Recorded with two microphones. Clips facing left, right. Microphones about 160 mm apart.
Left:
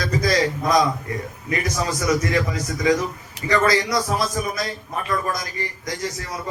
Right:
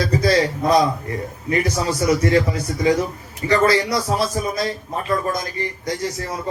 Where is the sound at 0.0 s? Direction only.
30° right (ahead or behind).